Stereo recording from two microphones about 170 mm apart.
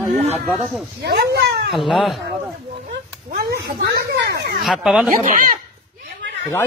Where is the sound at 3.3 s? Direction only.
65° right (ahead or behind).